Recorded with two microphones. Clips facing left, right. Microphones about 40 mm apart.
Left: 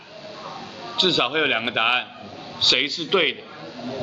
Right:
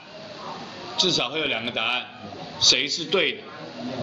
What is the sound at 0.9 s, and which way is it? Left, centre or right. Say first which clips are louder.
A man's voice: left 4 dB; left.